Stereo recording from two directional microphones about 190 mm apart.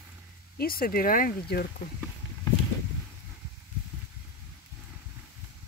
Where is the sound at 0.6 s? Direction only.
50° left (ahead or behind).